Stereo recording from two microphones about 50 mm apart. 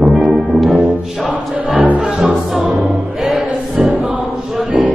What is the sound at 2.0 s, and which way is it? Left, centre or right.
Music, centre.